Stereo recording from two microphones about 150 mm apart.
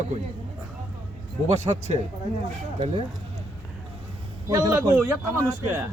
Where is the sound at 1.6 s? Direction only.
50° right (ahead or behind).